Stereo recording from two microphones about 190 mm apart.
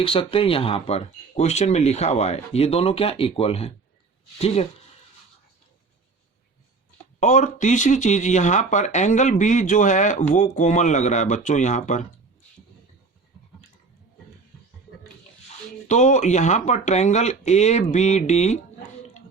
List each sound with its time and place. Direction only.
0.0 s speech: 30° left (ahead or behind)
7.2 s speech: 40° left (ahead or behind)
15.9 s speech: 40° left (ahead or behind)